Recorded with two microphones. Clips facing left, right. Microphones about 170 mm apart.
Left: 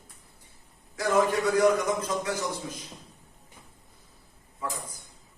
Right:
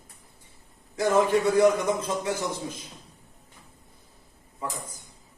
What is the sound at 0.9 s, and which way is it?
A man's voice, 25° right (ahead or behind).